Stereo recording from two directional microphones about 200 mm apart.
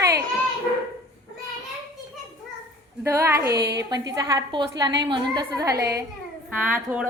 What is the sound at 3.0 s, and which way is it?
A woman's voice, 15° right (ahead or behind).